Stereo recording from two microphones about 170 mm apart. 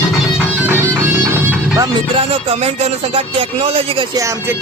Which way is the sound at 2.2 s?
35° right (ahead or behind).